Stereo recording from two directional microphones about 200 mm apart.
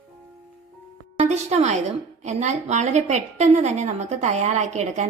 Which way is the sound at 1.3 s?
35° right (ahead or behind).